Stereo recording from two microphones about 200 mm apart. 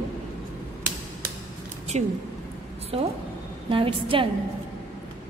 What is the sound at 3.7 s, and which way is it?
Speech, 25° right (ahead or behind).